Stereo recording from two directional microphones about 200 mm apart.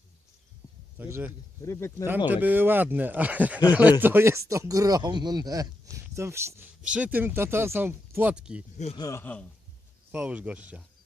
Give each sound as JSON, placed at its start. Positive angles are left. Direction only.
{"t": 0.9, "sound": "speech", "side_deg": -10}
{"t": 1.6, "sound": "a man's voice", "side_deg": 15}
{"t": 2.0, "sound": "speech", "side_deg": -10}
{"t": 9.0, "sound": "a man's voice", "side_deg": 15}
{"t": 10.1, "sound": "speech", "side_deg": -5}